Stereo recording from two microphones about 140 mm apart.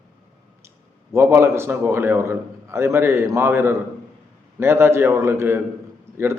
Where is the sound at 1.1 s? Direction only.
20° right (ahead or behind).